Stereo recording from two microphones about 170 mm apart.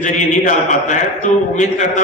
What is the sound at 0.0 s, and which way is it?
A man's voice, 45° left (ahead or behind).